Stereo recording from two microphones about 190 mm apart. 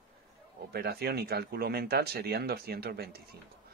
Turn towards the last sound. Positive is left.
turn(degrees=-55)  # may be behind; listen again after turning